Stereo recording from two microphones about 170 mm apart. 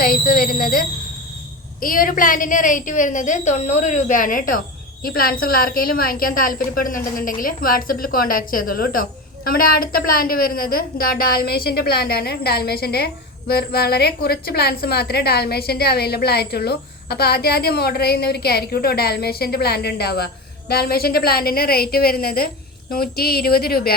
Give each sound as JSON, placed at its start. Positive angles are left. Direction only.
{"t": 0.0, "sound": "a woman's voice", "side_deg": 60}